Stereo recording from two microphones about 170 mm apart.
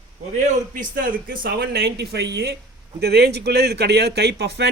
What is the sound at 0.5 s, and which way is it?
A man's voice, 50° right (ahead or behind).